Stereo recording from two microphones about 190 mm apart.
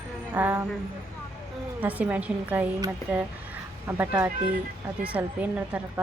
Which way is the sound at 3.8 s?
10° right (ahead or behind).